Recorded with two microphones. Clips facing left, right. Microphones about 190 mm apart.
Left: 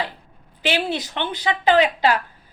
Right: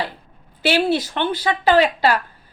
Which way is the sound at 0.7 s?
15° left (ahead or behind).